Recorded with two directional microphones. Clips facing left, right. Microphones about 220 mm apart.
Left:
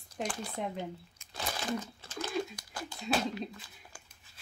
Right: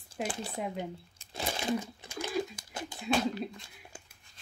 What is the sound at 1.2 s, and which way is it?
Crumpling, 25° right (ahead or behind).